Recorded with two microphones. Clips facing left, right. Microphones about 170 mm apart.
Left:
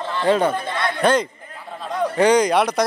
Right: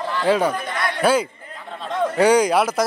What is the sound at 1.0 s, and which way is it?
A man's voice, 5° right (ahead or behind).